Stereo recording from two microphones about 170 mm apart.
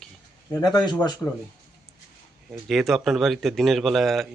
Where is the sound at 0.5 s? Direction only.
20° left (ahead or behind).